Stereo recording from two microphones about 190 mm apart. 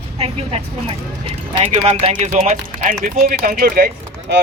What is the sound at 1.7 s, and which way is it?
A woman's voice, 30° right (ahead or behind).